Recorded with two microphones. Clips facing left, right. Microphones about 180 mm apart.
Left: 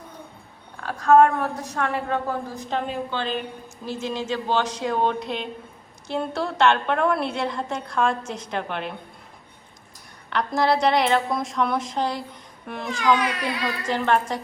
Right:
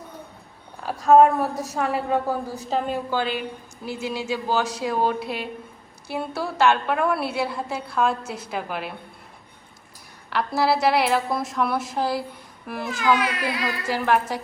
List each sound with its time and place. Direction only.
0.8 s a woman's voice: 15° right (ahead or behind)
1.4 s a woman's voice: 5° right (ahead or behind)
10.2 s a woman's voice: 5° right (ahead or behind)